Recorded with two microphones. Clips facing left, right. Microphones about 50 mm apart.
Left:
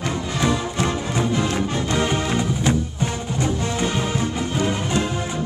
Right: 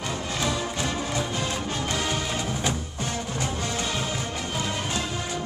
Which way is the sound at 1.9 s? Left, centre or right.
Left.